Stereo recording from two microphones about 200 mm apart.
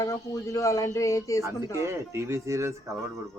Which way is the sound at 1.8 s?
15° right (ahead or behind).